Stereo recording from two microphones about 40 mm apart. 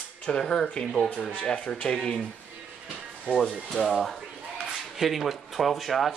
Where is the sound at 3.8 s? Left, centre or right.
Centre.